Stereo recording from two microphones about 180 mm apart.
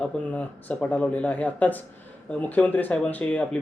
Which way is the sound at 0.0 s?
5° left (ahead or behind).